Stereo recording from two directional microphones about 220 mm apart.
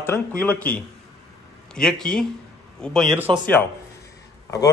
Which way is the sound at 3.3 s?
20° right (ahead or behind).